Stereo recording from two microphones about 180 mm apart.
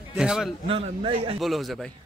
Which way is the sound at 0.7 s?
30° right (ahead or behind).